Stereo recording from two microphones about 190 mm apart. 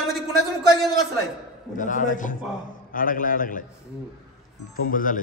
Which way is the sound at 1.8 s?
45° left (ahead or behind).